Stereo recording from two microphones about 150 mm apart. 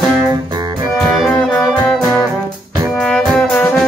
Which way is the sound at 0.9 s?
Centre (ahead or behind).